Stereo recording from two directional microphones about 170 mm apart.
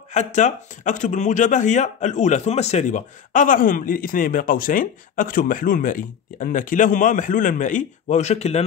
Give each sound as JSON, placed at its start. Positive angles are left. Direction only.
{"t": 0.1, "sound": "speech", "side_deg": 45}